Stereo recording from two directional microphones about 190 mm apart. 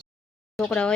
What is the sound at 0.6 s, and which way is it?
Speech, 5° left (ahead or behind).